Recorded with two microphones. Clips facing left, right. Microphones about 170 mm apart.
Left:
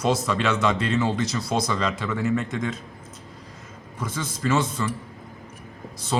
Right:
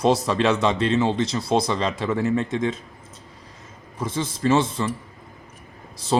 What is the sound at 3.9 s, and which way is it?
Speech, 30° right (ahead or behind).